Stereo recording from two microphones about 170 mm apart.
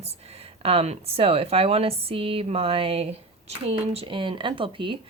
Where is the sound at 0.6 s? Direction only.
35° right (ahead or behind).